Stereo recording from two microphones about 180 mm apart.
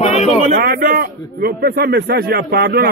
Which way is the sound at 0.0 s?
35° left (ahead or behind).